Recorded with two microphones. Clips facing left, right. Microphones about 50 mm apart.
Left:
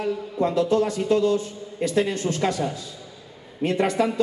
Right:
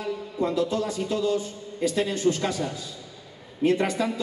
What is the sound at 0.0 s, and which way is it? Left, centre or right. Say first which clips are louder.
A man's voice: left 4 dB; left.